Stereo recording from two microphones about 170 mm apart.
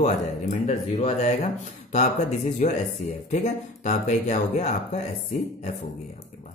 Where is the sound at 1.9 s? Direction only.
45° left (ahead or behind).